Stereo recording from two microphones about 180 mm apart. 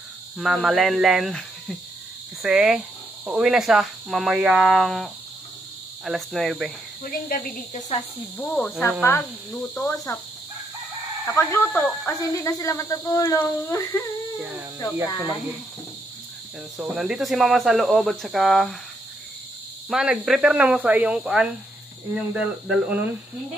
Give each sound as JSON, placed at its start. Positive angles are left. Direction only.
{"t": 0.4, "sound": "speech", "side_deg": 0}
{"t": 7.0, "sound": "speech", "side_deg": 50}
{"t": 8.4, "sound": "speech", "side_deg": 5}
{"t": 11.2, "sound": "speech", "side_deg": 15}
{"t": 12.1, "sound": "speech", "side_deg": 20}
{"t": 16.7, "sound": "speech", "side_deg": -5}
{"t": 19.9, "sound": "speech", "side_deg": -5}